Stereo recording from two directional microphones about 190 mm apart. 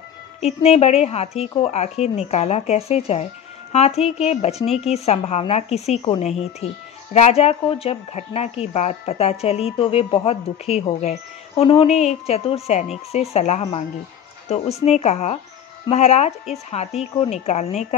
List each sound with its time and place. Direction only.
0.4 s speech: 35° left (ahead or behind)